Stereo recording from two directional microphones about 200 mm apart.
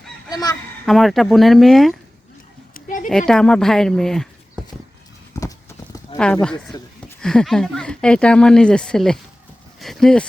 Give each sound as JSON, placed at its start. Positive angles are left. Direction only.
{"t": 0.3, "sound": "honk", "side_deg": 20}
{"t": 0.9, "sound": "speech", "side_deg": 0}
{"t": 2.7, "sound": "a sound", "side_deg": 40}
{"t": 3.1, "sound": "speech", "side_deg": 5}
{"t": 5.3, "sound": "clip-clop", "side_deg": 15}
{"t": 6.1, "sound": "speech", "side_deg": 5}